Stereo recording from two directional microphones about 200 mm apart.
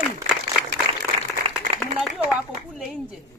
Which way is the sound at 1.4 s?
30° right (ahead or behind).